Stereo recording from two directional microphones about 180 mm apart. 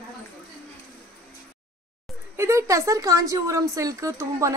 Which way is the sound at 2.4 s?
15° right (ahead or behind).